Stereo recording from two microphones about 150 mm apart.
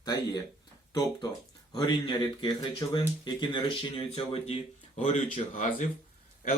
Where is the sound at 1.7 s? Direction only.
30° left (ahead or behind).